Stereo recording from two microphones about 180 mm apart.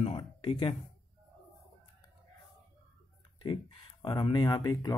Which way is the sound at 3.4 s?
25° left (ahead or behind).